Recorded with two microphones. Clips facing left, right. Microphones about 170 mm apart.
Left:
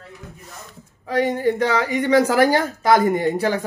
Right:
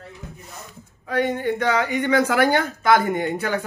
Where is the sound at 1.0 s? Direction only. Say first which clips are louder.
Left 3 dB; 35° left (ahead or behind).